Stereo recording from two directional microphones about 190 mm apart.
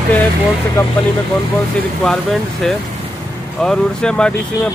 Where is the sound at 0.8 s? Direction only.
15° left (ahead or behind).